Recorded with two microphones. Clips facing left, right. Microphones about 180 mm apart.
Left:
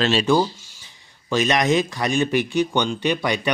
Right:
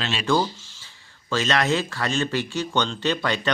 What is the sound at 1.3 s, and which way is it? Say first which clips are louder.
Speech: left 4 dB; 15° left (ahead or behind).